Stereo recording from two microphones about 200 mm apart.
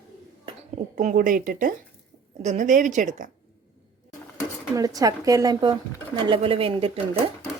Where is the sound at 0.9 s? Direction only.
40° right (ahead or behind).